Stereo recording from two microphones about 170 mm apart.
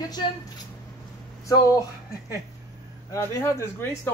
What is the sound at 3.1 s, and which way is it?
Speech, 20° left (ahead or behind).